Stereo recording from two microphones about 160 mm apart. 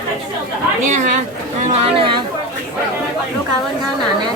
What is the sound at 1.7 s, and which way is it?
Speech, 35° right (ahead or behind).